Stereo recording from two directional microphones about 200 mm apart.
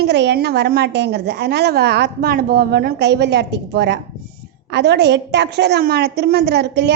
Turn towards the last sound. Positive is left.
turn(degrees=-55)  # may be behind; listen again after turning